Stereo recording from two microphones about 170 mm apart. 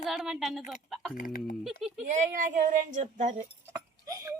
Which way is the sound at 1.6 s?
Centre (ahead or behind).